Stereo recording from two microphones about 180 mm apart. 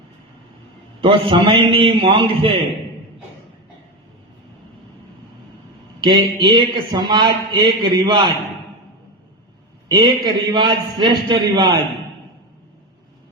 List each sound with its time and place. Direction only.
1.0 s a man's voice: 30° right (ahead or behind)
6.1 s a man's voice: 25° right (ahead or behind)
9.9 s a man's voice: 25° right (ahead or behind)